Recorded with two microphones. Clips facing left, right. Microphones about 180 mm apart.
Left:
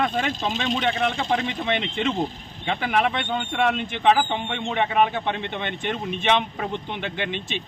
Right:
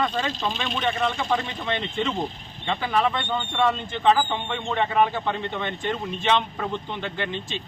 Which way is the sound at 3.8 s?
20° left (ahead or behind).